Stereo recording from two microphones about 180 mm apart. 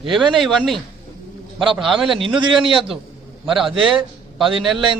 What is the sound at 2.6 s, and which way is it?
Speech, 30° right (ahead or behind).